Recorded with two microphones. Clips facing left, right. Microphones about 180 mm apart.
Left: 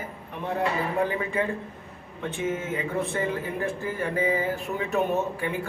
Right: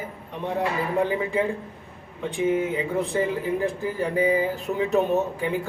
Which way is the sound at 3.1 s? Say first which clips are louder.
Right 4 dB; 15° right (ahead or behind).